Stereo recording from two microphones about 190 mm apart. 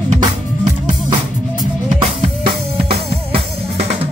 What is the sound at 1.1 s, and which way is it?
Music, 25° right (ahead or behind).